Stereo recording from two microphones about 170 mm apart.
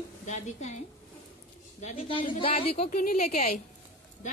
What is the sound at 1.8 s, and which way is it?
A woman's voice, 35° left (ahead or behind).